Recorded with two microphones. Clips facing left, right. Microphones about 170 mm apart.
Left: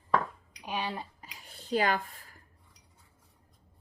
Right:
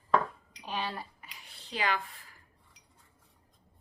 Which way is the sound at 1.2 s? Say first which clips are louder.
Left 3 dB; 45° left (ahead or behind).